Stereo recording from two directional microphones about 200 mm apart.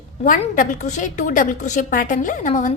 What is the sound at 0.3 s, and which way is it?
A woman's voice, 40° left (ahead or behind).